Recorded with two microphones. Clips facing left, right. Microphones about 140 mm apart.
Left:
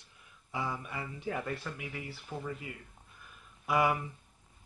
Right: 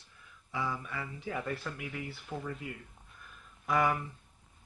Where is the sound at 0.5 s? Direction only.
20° left (ahead or behind).